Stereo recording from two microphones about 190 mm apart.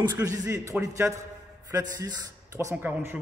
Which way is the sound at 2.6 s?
15° right (ahead or behind).